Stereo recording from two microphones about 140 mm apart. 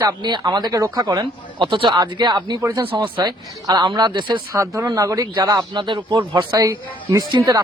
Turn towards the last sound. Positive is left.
turn(degrees=-25)  # may be behind; listen again after turning